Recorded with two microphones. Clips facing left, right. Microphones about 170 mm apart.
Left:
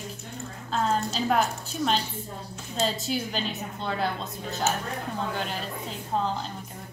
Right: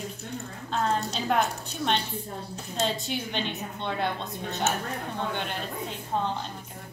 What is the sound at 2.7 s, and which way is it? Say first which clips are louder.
A woman's voice: left 2 dB; centre (ahead or behind).